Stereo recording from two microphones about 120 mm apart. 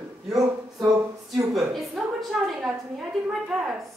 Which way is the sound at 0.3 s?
30° right (ahead or behind).